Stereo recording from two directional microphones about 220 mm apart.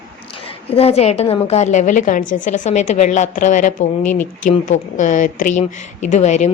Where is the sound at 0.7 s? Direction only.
30° left (ahead or behind).